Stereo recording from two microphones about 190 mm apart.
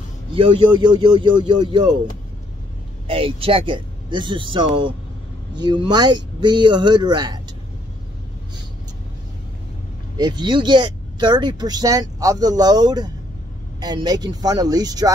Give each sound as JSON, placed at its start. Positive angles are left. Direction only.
{"t": 0.3, "sound": "speech", "side_deg": -25}
{"t": 3.1, "sound": "speech", "side_deg": -30}
{"t": 10.1, "sound": "speech", "side_deg": -25}